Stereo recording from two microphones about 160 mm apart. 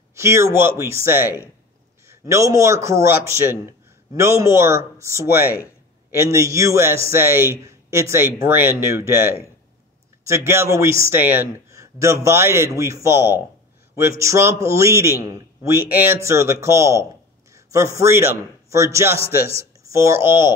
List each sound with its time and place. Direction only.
0.1 s a man's voice: 15° right (ahead or behind)
5.4 s speech: 70° left (ahead or behind)
6.0 s a man's voice: 15° right (ahead or behind)